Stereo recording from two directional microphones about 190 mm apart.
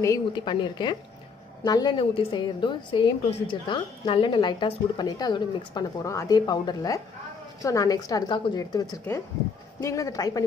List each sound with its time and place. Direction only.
0.0 s a woman's voice: 20° left (ahead or behind)